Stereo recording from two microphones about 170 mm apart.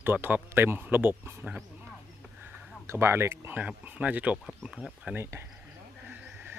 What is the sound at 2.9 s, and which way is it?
Speech, 15° right (ahead or behind).